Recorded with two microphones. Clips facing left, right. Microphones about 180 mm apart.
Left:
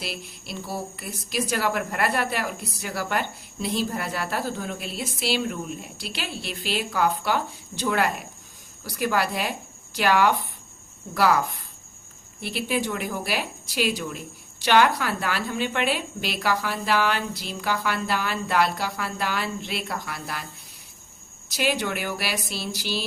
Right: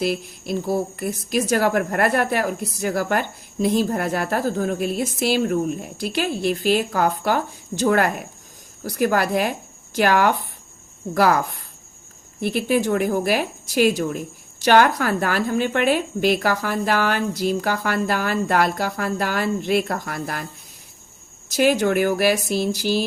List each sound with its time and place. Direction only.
0.0 s a woman's voice: 45° right (ahead or behind)
21.5 s a woman's voice: 45° right (ahead or behind)